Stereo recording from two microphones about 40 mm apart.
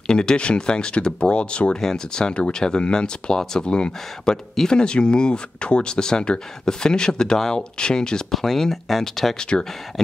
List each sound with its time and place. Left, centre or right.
0.0 s speech: centre
1.8 s speech: centre
8.3 s speech: centre
9.4 s speech: left